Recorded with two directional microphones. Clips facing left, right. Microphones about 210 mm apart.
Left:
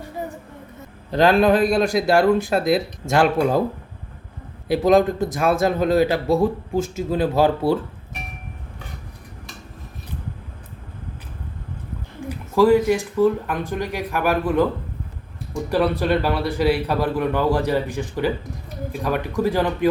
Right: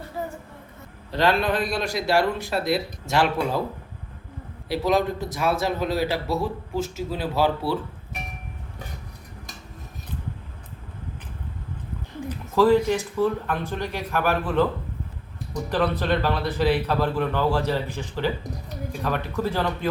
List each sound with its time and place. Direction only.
1.1 s speech: 45° left (ahead or behind)
4.7 s speech: 50° left (ahead or behind)
12.3 s a sound: 10° left (ahead or behind)
13.2 s a man's voice: 15° left (ahead or behind)
15.7 s a man's voice: 10° left (ahead or behind)